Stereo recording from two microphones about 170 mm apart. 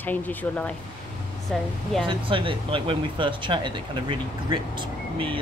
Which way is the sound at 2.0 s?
30° right (ahead or behind).